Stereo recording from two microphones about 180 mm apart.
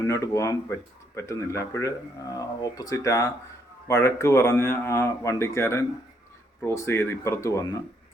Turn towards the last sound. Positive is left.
turn(degrees=15)  # may be behind; listen again after turning